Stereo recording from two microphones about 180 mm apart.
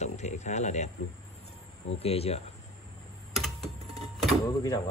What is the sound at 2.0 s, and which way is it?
Speech, 35° left (ahead or behind).